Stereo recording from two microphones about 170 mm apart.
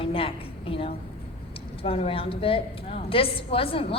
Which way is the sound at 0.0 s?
35° left (ahead or behind).